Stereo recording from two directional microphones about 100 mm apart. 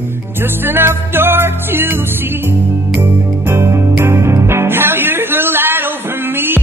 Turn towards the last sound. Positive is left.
turn(degrees=-20)  # may be behind; listen again after turning